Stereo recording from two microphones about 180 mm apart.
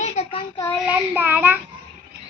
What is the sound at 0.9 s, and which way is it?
Child singing, 10° right (ahead or behind).